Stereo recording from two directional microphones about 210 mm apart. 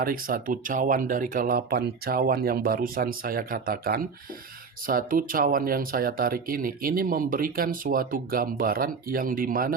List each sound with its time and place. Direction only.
0.0 s speech: 45° right (ahead or behind)